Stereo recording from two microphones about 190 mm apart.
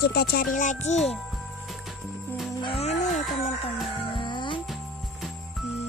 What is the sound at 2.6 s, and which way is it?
Music, 30° left (ahead or behind).